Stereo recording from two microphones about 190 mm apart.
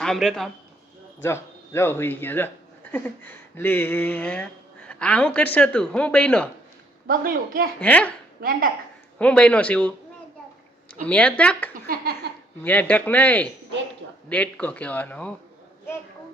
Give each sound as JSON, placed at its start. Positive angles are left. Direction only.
{"t": 0.0, "sound": "a man's voice", "side_deg": 0}
{"t": 1.2, "sound": "speech", "side_deg": 15}
{"t": 7.1, "sound": "a child's voice", "side_deg": -50}
{"t": 7.8, "sound": "speech", "side_deg": 5}
{"t": 9.1, "sound": "speech", "side_deg": 5}
{"t": 11.0, "sound": "speech", "side_deg": 5}
{"t": 12.2, "sound": "a sound", "side_deg": -60}
{"t": 12.6, "sound": "speech", "side_deg": 10}